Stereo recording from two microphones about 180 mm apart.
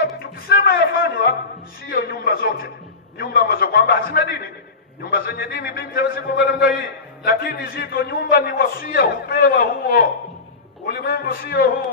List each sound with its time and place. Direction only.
0.0 s music: 55° left (ahead or behind)
1.9 s a sound: 55° left (ahead or behind)
3.2 s a man's voice: 55° left (ahead or behind)